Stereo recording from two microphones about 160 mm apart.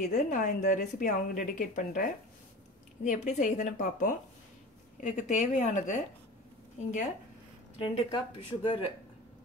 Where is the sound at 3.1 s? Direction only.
50° left (ahead or behind).